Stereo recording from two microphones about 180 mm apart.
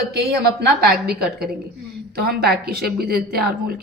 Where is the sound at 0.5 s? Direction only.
65° right (ahead or behind).